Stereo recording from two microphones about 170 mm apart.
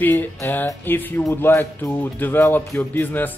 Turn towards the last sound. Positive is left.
turn(degrees=10)  # may be behind; listen again after turning